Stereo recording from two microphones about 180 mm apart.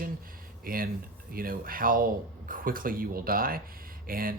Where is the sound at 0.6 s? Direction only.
55° right (ahead or behind).